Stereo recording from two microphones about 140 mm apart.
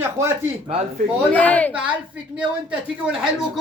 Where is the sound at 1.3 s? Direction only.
10° left (ahead or behind).